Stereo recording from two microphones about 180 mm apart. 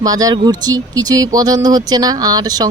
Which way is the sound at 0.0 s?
20° right (ahead or behind).